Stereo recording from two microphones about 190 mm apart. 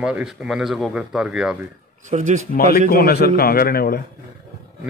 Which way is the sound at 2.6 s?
50° left (ahead or behind).